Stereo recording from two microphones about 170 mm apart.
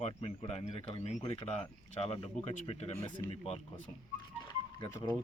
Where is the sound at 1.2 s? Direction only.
25° left (ahead or behind).